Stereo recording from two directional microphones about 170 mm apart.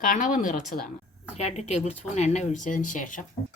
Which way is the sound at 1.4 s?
40° left (ahead or behind).